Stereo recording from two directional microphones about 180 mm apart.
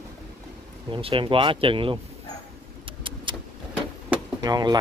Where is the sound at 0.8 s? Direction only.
30° right (ahead or behind).